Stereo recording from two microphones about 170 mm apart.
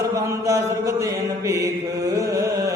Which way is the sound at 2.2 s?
20° right (ahead or behind).